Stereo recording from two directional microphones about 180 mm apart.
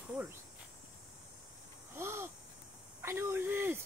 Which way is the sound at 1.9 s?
15° right (ahead or behind).